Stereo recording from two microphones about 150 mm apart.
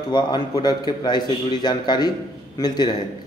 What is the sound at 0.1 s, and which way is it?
Speech, 30° left (ahead or behind).